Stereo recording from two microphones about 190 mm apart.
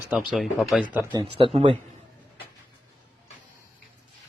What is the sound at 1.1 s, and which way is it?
Speech, 25° right (ahead or behind).